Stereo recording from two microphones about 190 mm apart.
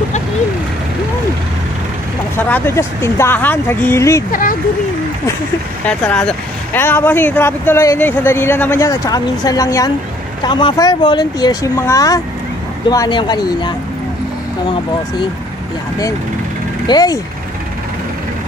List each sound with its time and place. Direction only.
2.3 s speech: 10° left (ahead or behind)
4.3 s speech: 45° left (ahead or behind)
5.9 s speech: 5° left (ahead or behind); by 13.7 s 20° left (ahead or behind)
16.8 s speech: 20° left (ahead or behind)